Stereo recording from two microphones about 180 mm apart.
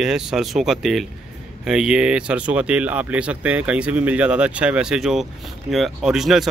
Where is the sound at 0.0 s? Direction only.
5° right (ahead or behind).